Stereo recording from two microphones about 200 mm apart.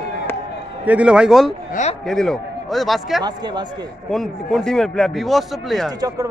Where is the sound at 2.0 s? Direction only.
5° left (ahead or behind).